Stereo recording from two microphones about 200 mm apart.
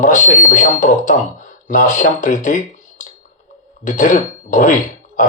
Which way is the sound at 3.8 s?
40° left (ahead or behind).